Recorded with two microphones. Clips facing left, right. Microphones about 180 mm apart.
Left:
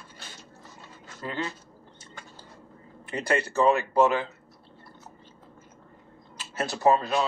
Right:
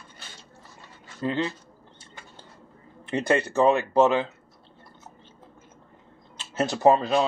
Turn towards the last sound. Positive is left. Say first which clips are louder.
# right 3 dB
turn(degrees=-25)  # may be behind; listen again after turning